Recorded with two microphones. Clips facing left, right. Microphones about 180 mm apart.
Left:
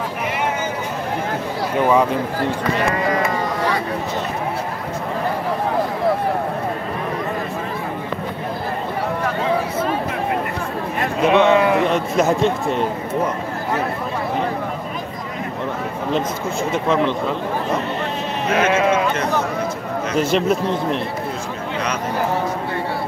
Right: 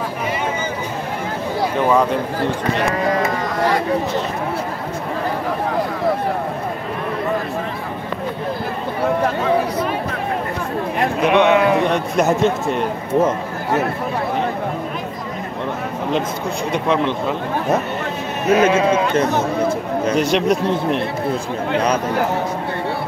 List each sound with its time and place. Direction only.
11.2 s speech: centre (ahead or behind)
18.5 s speech: 30° right (ahead or behind)
20.2 s speech: centre (ahead or behind)